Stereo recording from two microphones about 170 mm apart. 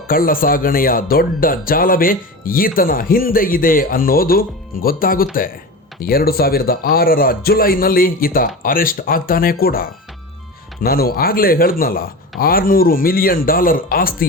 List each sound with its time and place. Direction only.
0.1 s speech: 55° left (ahead or behind)